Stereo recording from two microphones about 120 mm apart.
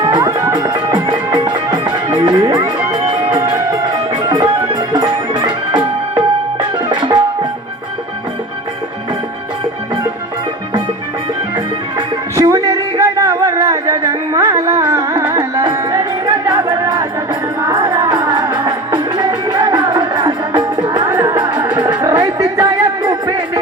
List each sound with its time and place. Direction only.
0.0 s music: 35° right (ahead or behind)
11.5 s music: 35° right (ahead or behind)